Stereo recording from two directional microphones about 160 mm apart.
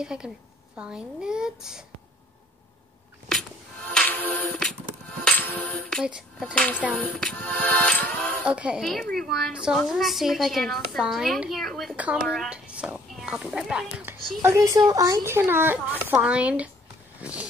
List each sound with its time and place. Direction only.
0.0 s a woman's voice: 5° right (ahead or behind)
3.9 s music: 10° left (ahead or behind)
6.0 s a woman's voice: 5° right (ahead or behind)
6.5 s music: 5° left (ahead or behind)
8.5 s a woman's voice: 5° right (ahead or behind)
14.4 s a child's voice: 20° right (ahead or behind)
17.2 s roaring cats: 10° right (ahead or behind)